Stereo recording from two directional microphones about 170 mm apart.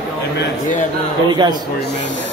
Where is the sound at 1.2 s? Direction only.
25° right (ahead or behind).